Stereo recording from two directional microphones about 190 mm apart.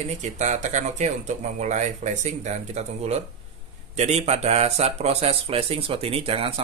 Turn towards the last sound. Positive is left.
turn(degrees=-30)  # may be behind; listen again after turning